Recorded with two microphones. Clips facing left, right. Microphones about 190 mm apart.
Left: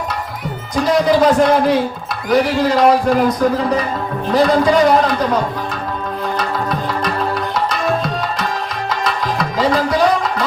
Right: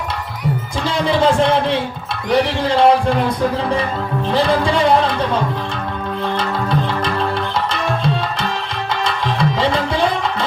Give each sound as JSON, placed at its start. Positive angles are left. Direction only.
{"t": 0.8, "sound": "a man's voice", "side_deg": -30}
{"t": 6.3, "sound": "music", "side_deg": -30}
{"t": 7.7, "sound": "tabla", "side_deg": -30}
{"t": 8.9, "sound": "music", "side_deg": -30}